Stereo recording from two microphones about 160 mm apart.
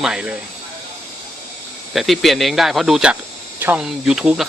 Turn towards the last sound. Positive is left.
turn(degrees=-5)  # may be behind; listen again after turning